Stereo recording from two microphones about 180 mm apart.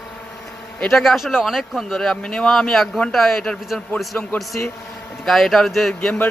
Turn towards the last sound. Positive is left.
turn(degrees=5)  # may be behind; listen again after turning